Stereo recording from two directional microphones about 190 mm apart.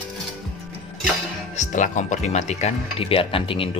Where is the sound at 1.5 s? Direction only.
40° left (ahead or behind).